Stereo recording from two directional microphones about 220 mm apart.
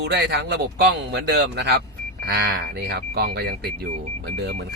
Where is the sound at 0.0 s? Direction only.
50° right (ahead or behind).